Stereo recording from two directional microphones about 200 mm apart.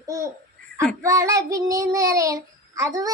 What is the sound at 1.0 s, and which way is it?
Child singing, 15° right (ahead or behind).